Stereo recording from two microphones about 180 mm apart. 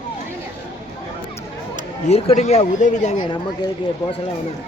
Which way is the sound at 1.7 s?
35° left (ahead or behind).